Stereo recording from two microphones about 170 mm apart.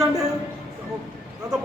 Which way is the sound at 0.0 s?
5° right (ahead or behind).